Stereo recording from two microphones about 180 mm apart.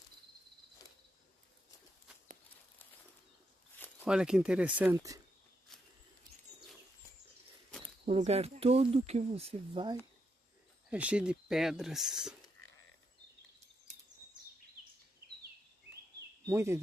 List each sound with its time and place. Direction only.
4.0 s speech: 5° right (ahead or behind)
5.7 s a sound: centre (ahead or behind)
8.0 s speech: 35° right (ahead or behind)
10.9 s speech: 5° right (ahead or behind)
16.4 s speech: 15° right (ahead or behind)